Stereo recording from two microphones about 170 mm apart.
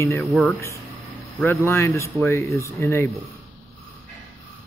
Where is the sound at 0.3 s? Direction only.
5° left (ahead or behind).